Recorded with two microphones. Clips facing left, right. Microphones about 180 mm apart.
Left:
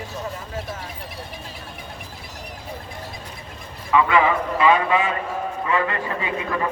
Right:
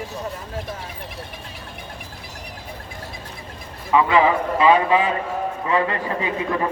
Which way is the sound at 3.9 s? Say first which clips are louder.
Right 1 dB; 25° right (ahead or behind).